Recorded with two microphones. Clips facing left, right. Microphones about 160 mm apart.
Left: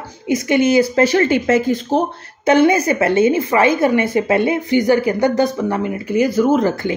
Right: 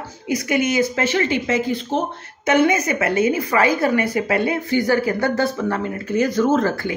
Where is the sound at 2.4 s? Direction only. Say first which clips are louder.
Left 4 dB; 30° left (ahead or behind).